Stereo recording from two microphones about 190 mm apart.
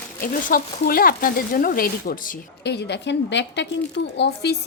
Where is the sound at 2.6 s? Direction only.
65° left (ahead or behind).